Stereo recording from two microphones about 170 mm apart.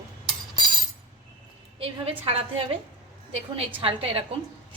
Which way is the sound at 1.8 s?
35° right (ahead or behind).